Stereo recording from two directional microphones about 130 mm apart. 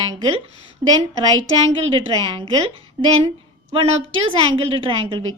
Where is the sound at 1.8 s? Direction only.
45° right (ahead or behind).